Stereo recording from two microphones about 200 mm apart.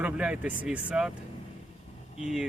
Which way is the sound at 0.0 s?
5° right (ahead or behind).